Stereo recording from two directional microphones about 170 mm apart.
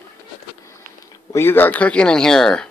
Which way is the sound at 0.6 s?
15° left (ahead or behind).